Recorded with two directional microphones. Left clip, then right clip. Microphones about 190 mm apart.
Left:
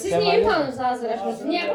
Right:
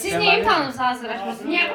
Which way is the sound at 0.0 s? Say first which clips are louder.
Right 1 dB; 45° right (ahead or behind).